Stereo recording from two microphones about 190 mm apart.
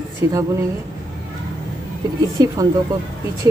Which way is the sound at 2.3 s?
20° right (ahead or behind).